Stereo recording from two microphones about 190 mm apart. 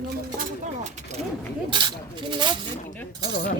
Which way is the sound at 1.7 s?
25° right (ahead or behind).